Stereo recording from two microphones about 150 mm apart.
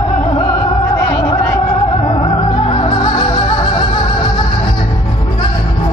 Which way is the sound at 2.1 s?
35° left (ahead or behind).